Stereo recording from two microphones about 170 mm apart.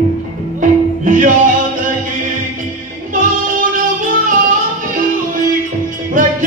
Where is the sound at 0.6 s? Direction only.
50° right (ahead or behind).